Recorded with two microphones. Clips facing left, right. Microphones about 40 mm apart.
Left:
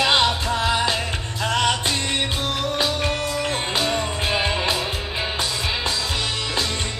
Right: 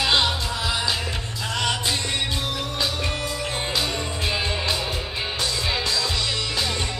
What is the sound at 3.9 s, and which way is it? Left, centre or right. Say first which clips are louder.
Music: left 4 dB; centre.